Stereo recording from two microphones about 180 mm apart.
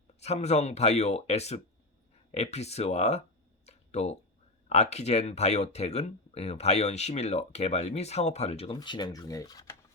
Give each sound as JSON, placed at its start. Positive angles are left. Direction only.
{"t": 0.2, "sound": "speech", "side_deg": 40}
{"t": 3.7, "sound": "a sound", "side_deg": 40}
{"t": 4.7, "sound": "speech", "side_deg": 35}